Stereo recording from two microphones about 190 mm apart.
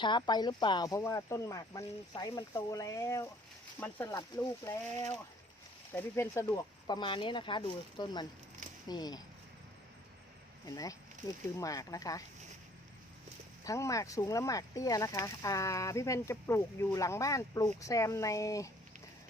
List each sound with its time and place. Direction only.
0.0 s speech: 25° left (ahead or behind)
6.4 s speech: 25° left (ahead or behind)
10.7 s speech: 20° left (ahead or behind)
13.7 s speech: 15° left (ahead or behind)